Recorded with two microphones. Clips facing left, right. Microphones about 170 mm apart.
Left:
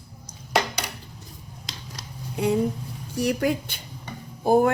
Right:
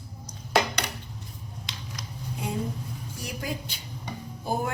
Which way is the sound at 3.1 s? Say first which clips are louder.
Left 12 dB; 65° left (ahead or behind).